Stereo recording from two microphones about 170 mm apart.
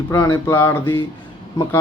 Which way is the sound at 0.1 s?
15° left (ahead or behind).